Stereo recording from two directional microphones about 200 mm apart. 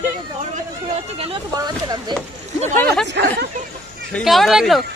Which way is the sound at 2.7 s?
5° left (ahead or behind).